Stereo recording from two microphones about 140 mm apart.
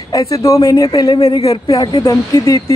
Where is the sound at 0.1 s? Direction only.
25° left (ahead or behind).